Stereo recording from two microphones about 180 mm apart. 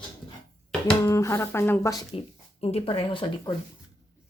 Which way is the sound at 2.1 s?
35° left (ahead or behind).